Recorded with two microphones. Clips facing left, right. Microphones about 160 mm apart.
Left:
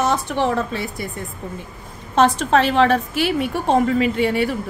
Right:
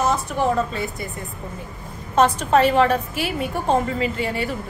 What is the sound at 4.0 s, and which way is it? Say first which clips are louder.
Speech: left 5 dB; 70° left (ahead or behind).